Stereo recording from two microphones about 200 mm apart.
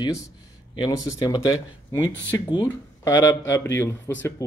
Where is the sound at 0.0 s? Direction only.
15° left (ahead or behind).